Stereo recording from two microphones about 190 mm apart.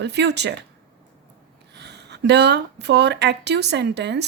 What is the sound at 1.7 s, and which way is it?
Speech, 65° right (ahead or behind).